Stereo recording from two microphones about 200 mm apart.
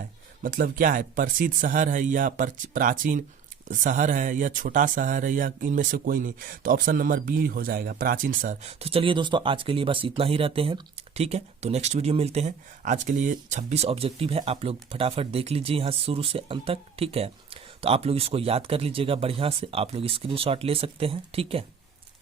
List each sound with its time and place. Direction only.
0.4 s speech: 45° right (ahead or behind)